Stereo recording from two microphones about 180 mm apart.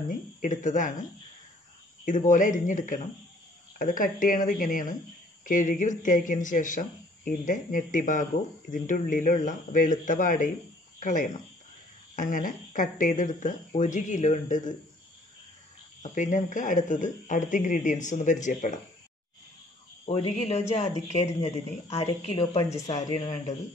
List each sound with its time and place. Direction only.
0.4 s speech: 45° left (ahead or behind)
2.0 s speech: 45° left (ahead or behind)
16.0 s speech: 40° left (ahead or behind)
20.1 s speech: 35° left (ahead or behind)